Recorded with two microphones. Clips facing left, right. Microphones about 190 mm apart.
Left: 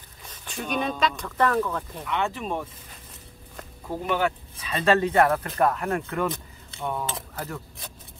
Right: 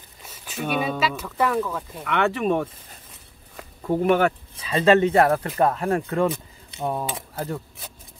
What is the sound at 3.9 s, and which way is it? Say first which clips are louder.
Speech: right 7 dB; 55° right (ahead or behind).